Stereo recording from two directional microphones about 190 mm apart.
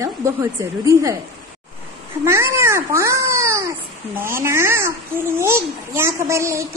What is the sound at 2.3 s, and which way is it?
Speech, 15° right (ahead or behind).